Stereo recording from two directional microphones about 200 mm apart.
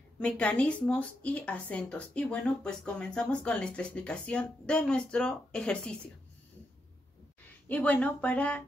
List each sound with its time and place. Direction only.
0.2 s a woman's voice: 5° left (ahead or behind)
7.6 s speech: 10° left (ahead or behind)